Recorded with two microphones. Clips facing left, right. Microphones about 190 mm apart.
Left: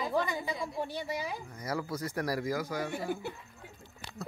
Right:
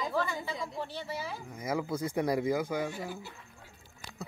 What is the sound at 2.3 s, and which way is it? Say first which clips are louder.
Speech: right 3 dB; 20° right (ahead or behind).